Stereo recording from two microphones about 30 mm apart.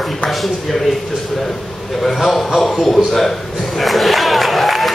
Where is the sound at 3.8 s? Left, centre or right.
Centre.